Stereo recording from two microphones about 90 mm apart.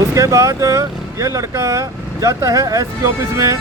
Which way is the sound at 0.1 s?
35° right (ahead or behind).